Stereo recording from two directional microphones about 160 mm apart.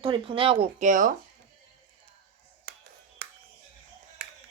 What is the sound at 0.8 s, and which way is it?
Speech, 55° right (ahead or behind).